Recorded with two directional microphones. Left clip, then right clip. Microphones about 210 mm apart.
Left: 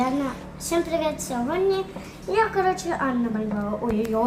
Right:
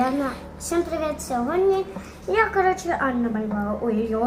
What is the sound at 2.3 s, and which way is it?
Speech, 20° left (ahead or behind).